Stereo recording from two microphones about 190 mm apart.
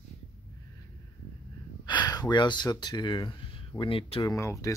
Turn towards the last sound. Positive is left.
turn(degrees=15)  # may be behind; listen again after turning